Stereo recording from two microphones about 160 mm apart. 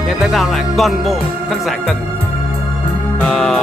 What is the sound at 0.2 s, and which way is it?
Music, centre (ahead or behind).